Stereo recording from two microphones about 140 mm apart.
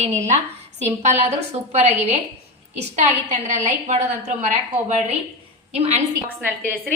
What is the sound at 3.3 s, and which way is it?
A woman's voice, 60° right (ahead or behind).